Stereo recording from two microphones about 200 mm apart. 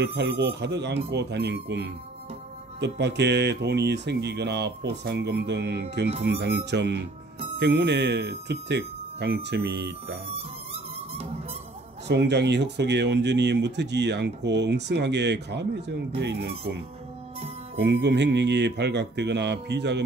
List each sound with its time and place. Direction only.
0.0 s speech: 60° right (ahead or behind)
12.1 s speech: 60° right (ahead or behind)
17.7 s speech: 60° right (ahead or behind)